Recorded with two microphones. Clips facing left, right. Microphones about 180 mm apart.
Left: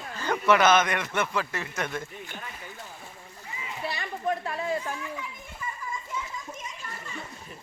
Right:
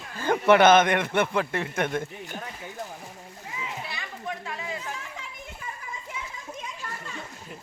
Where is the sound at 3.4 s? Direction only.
90° right.